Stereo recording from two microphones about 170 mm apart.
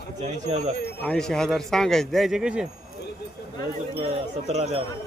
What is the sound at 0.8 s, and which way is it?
Speech, 70° left (ahead or behind).